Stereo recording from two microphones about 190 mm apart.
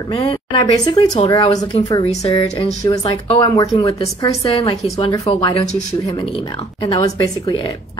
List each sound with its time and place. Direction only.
0.1 s speech: 30° left (ahead or behind)
5.5 s speech: 35° left (ahead or behind)